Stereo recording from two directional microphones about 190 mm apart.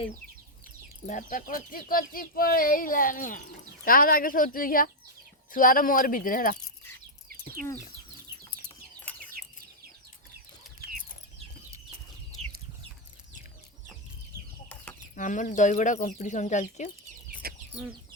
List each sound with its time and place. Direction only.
1.0 s speech: 45° left (ahead or behind)
7.3 s chicken: 45° right (ahead or behind)
15.1 s speech: 40° left (ahead or behind)
17.4 s chicken: 55° right (ahead or behind)